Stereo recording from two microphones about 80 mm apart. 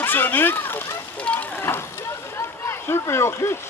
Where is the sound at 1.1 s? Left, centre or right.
Centre.